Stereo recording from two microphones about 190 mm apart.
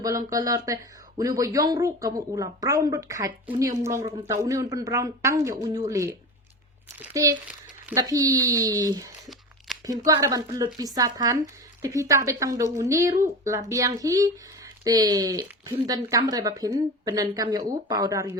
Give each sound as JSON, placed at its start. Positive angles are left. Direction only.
{"t": 0.0, "sound": "a woman's voice", "side_deg": -20}